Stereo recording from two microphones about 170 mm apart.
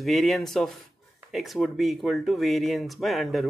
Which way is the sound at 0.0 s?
Centre (ahead or behind).